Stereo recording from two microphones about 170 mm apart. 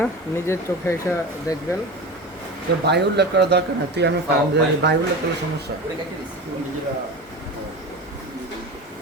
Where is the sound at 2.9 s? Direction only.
80° right.